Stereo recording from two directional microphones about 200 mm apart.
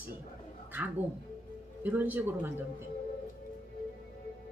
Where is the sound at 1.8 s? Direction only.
10° right (ahead or behind).